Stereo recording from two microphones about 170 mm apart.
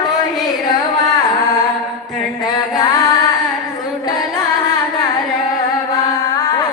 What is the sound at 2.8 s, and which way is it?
Singing, 20° left (ahead or behind).